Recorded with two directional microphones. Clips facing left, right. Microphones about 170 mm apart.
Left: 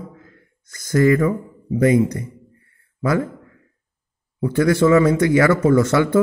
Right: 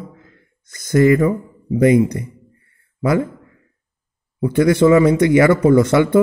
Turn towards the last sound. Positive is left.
turn(degrees=-15)  # may be behind; listen again after turning